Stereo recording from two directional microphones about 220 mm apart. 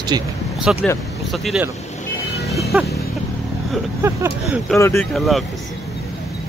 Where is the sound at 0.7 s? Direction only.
5° right (ahead or behind).